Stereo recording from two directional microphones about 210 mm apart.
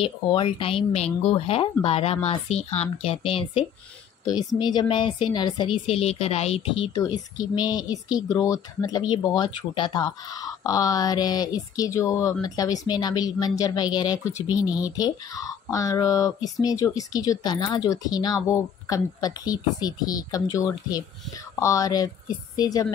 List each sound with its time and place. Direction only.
0.0 s a woman's voice: 25° left (ahead or behind)